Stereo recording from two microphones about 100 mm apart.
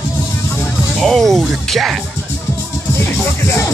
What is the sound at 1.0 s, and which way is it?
Speech, centre (ahead or behind).